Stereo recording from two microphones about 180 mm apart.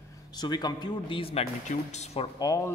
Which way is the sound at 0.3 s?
20° left (ahead or behind).